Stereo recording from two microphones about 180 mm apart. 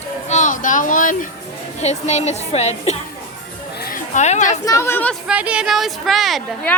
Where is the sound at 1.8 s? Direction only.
40° left (ahead or behind).